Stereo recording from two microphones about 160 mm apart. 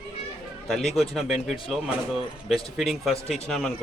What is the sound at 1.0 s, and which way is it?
A man's voice, centre (ahead or behind).